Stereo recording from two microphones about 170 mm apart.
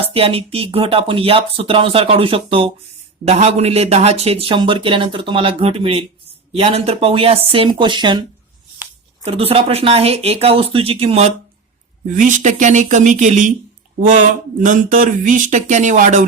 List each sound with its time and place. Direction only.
0.0 s speech: 35° right (ahead or behind)
9.2 s speech: 35° right (ahead or behind)
12.1 s speech: 45° right (ahead or behind)
14.6 s speech: 50° right (ahead or behind)